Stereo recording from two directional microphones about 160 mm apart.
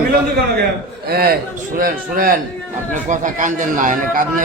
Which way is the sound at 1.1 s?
75° right (ahead or behind).